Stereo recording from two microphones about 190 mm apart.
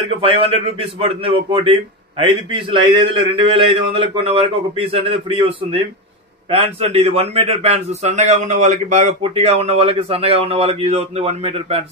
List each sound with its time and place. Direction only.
0.1 s a man's voice: 30° right (ahead or behind)